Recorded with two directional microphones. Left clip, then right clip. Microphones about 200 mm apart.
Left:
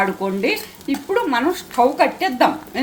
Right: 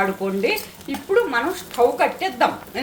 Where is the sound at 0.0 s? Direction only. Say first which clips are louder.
Left 1 dB; 35° left (ahead or behind).